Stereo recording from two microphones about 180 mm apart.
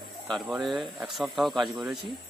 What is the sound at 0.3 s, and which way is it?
Speech, centre (ahead or behind).